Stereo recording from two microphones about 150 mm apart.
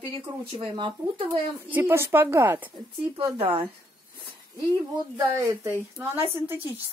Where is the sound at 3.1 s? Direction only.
35° right (ahead or behind).